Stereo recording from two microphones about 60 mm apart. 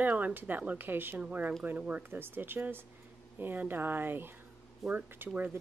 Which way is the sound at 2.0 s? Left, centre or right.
Right.